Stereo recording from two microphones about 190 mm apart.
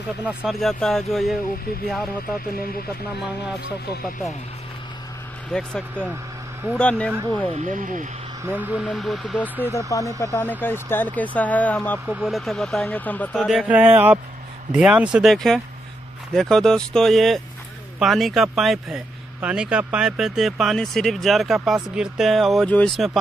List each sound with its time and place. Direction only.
0.5 s speech: centre (ahead or behind)
5.5 s speech: 5° left (ahead or behind)
7.5 s speech: 40° right (ahead or behind)
8.5 s speech: 10° right (ahead or behind)